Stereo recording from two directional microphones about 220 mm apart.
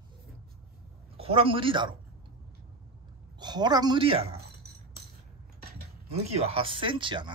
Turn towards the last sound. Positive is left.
turn(degrees=-20)  # may be behind; listen again after turning